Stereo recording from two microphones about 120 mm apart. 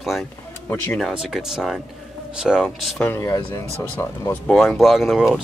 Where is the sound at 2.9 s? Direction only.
15° left (ahead or behind).